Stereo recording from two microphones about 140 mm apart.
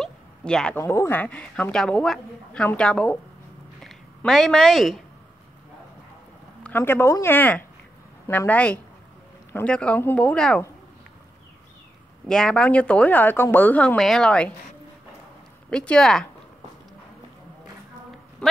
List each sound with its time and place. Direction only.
0.0 s a sound: 5° left (ahead or behind)
0.7 s a woman's voice: 20° left (ahead or behind); by 5.0 s centre (ahead or behind)
6.6 s a woman's voice: 15° left (ahead or behind)
12.3 s a woman's voice: 5° left (ahead or behind)
15.7 s speech: 5° left (ahead or behind)
18.4 s speech: 5° left (ahead or behind)